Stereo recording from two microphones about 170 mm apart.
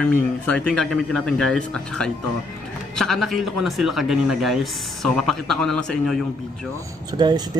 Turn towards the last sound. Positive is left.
turn(degrees=-25)  # may be behind; listen again after turning